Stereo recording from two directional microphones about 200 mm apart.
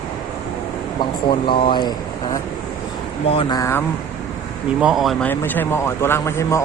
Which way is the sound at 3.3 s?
25° left (ahead or behind).